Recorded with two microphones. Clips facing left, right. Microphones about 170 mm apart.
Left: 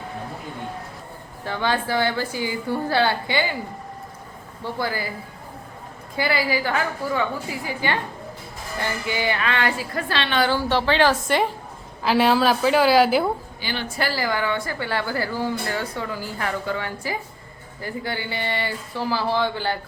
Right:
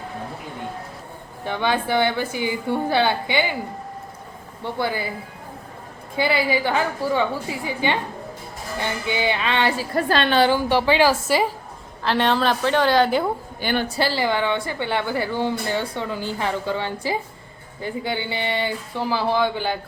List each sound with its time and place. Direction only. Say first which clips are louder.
1.5 s speech: right 2 dB; 20° right (ahead or behind)
4.6 s speech: right 2 dB; 20° right (ahead or behind)
6.1 s speech: right 2 dB; 20° right (ahead or behind); by 10.3 s 45° right (ahead or behind)
10.5 s a woman's voice: right 2 dB; 15° right (ahead or behind)
12.0 s a woman's voice: left 2 dB; 5° left (ahead or behind)
13.6 s a woman's voice: right 7 dB; 50° right (ahead or behind)
13.9 s speech: right 3 dB; 30° right (ahead or behind)